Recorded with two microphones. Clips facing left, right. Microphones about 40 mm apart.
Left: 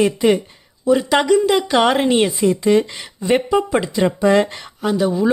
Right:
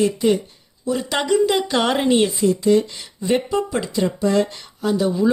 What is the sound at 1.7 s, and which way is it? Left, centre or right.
Speech, centre.